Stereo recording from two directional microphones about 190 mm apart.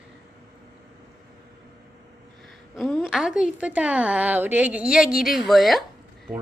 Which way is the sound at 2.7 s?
Centre (ahead or behind).